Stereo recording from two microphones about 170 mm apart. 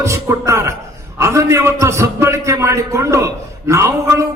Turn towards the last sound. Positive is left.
turn(degrees=-15)  # may be behind; listen again after turning